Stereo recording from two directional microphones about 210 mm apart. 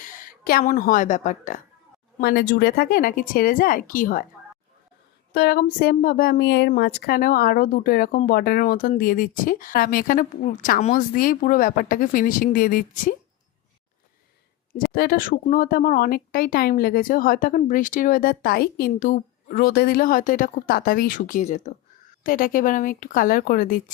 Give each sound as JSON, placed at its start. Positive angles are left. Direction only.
{"t": 0.1, "sound": "a woman's voice", "side_deg": 40}
{"t": 5.3, "sound": "speech", "side_deg": 50}
{"t": 14.8, "sound": "speech", "side_deg": 45}